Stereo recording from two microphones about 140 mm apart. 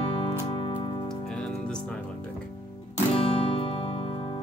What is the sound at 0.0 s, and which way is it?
Music, 40° left (ahead or behind).